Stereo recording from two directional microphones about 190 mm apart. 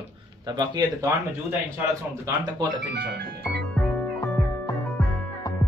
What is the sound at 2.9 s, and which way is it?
Music, 60° right (ahead or behind).